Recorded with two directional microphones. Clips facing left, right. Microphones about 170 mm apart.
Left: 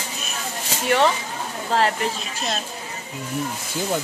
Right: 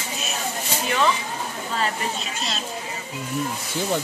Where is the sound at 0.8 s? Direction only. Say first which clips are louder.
Left 4 dB; 65° left (ahead or behind).